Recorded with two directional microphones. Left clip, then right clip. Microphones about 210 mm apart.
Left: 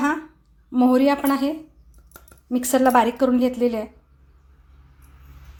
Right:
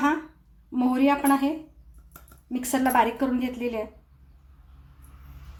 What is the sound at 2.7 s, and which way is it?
A woman's voice, 40° left (ahead or behind).